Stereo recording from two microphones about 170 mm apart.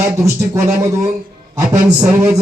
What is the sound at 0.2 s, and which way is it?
Speech, 20° right (ahead or behind).